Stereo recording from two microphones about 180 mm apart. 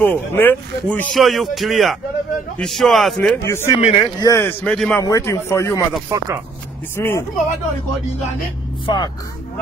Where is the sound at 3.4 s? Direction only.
15° left (ahead or behind).